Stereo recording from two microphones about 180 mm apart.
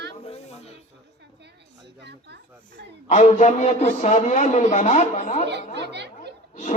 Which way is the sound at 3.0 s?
40° left (ahead or behind).